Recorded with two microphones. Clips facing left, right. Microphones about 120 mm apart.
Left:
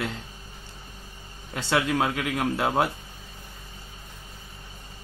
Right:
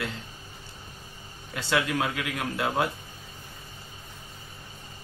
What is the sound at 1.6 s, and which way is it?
Speech, 25° left (ahead or behind).